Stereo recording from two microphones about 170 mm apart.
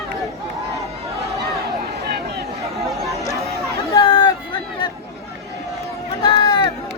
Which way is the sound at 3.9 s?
30° left (ahead or behind).